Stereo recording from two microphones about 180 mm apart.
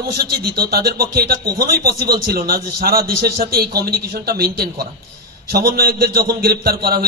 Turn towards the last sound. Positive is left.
turn(degrees=-60)  # may be behind; listen again after turning